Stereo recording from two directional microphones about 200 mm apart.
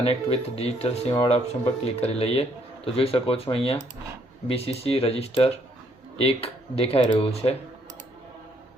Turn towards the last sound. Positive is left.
turn(degrees=30)  # may be behind; listen again after turning